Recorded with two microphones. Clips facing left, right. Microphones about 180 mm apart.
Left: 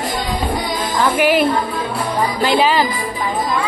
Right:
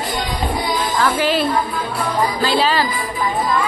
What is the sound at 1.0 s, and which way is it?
Speech, 15° left (ahead or behind).